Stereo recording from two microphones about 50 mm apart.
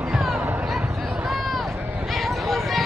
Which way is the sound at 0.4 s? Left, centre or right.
Right.